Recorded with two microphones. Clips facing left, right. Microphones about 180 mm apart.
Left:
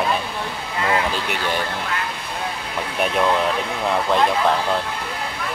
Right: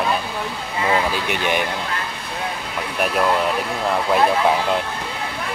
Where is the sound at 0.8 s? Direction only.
20° right (ahead or behind).